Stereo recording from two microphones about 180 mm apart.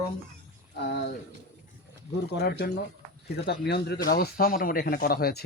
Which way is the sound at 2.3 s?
60° left (ahead or behind).